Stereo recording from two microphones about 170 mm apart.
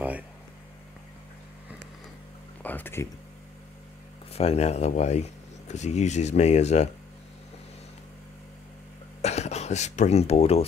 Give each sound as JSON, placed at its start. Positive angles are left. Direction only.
{"t": 2.6, "sound": "a sound", "side_deg": 10}
{"t": 4.3, "sound": "speech", "side_deg": 35}
{"t": 9.2, "sound": "speech", "side_deg": 40}